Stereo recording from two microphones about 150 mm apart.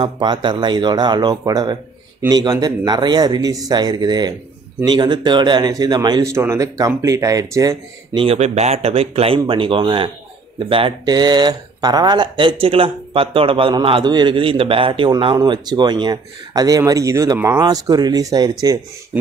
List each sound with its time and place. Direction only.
0.0 s speech: 30° right (ahead or behind)
8.2 s speech: 45° right (ahead or behind); by 18.8 s 25° right (ahead or behind)